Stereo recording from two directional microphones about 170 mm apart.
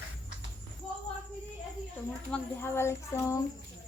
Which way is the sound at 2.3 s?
15° left (ahead or behind).